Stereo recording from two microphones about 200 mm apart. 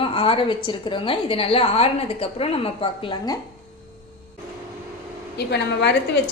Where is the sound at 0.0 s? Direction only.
25° left (ahead or behind).